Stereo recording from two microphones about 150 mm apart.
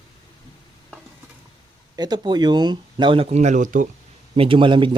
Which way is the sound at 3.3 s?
50° right (ahead or behind).